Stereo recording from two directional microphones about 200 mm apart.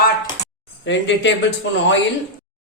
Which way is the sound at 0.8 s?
65° left (ahead or behind).